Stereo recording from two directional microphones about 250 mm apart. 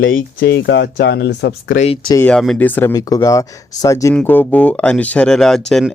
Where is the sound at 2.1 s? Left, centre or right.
Centre.